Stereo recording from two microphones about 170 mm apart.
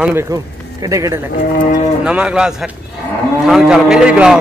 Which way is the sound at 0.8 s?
20° right (ahead or behind).